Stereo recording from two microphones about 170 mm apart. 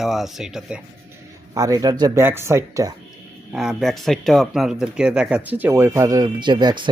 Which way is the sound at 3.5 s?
Centre (ahead or behind).